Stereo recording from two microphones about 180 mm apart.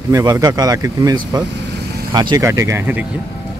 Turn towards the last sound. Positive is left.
turn(degrees=-10)  # may be behind; listen again after turning